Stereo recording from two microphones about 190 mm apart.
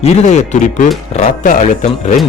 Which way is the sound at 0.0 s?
35° left (ahead or behind).